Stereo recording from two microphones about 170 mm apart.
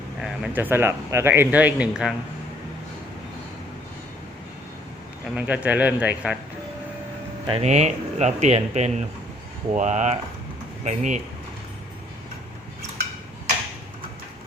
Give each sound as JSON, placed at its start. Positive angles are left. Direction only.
{"t": 0.2, "sound": "speech", "side_deg": -10}
{"t": 5.3, "sound": "speech", "side_deg": -10}
{"t": 7.4, "sound": "speech", "side_deg": -35}